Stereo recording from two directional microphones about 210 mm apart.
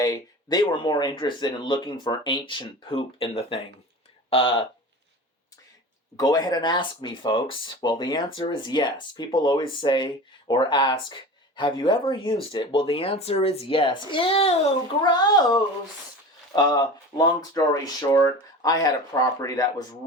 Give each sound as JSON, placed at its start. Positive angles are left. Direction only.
{"t": 0.0, "sound": "speech", "side_deg": 20}
{"t": 6.1, "sound": "speech", "side_deg": 20}